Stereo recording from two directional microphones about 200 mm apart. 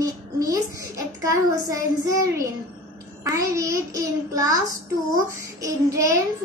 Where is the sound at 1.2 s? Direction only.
15° right (ahead or behind).